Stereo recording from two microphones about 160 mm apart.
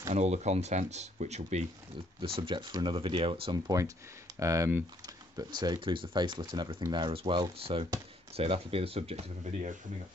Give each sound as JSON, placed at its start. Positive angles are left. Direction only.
{"t": 0.1, "sound": "speech", "side_deg": -45}
{"t": 2.2, "sound": "speech", "side_deg": -30}